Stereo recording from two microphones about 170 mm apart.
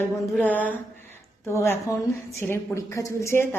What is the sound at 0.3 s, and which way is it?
A woman's voice, 10° left (ahead or behind).